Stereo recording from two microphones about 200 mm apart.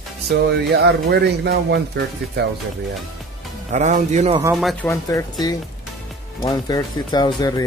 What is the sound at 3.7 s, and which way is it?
Speech, 35° right (ahead or behind).